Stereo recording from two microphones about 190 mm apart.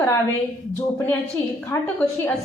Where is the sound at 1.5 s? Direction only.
10° left (ahead or behind).